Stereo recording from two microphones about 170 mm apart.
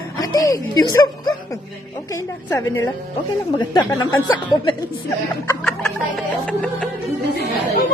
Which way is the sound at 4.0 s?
20° left (ahead or behind).